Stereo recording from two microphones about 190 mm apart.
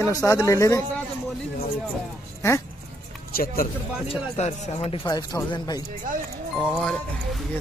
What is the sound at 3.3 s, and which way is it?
Speech, 50° left (ahead or behind).